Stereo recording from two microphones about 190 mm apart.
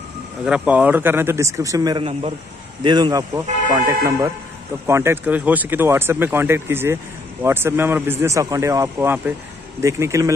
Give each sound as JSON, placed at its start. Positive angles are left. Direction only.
{"t": 0.5, "sound": "a man's voice", "side_deg": -5}